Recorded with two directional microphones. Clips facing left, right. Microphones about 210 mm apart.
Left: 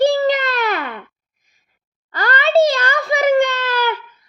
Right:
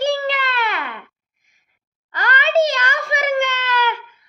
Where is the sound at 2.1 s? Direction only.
35° left (ahead or behind).